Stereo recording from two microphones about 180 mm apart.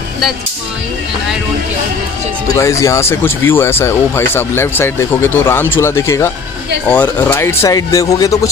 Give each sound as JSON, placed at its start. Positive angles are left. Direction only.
{"t": 2.4, "sound": "speech", "side_deg": 15}